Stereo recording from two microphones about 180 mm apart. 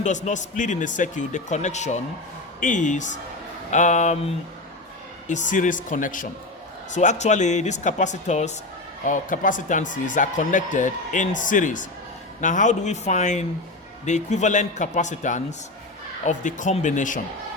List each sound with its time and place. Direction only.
0.0 s speech: 40° left (ahead or behind)
5.3 s speech: 45° left (ahead or behind)